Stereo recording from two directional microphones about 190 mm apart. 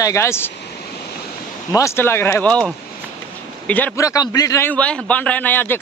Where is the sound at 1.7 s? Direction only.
15° left (ahead or behind).